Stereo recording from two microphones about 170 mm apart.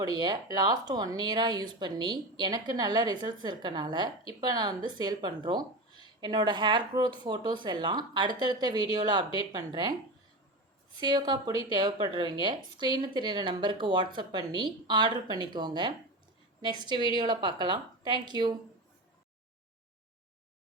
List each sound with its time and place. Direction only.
0.0 s speech: 25° right (ahead or behind)
11.0 s speech: 25° right (ahead or behind)